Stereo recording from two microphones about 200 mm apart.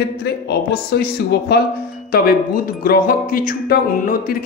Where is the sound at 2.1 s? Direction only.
50° left (ahead or behind).